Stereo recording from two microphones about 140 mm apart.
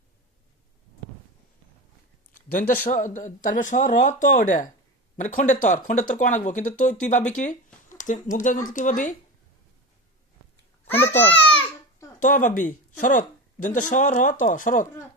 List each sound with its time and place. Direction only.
2.3 s a sound: 75° left (ahead or behind)
2.8 s speech: 65° left (ahead or behind)
10.8 s a child's voice: 15° left (ahead or behind)
12.2 s speech: 70° left (ahead or behind)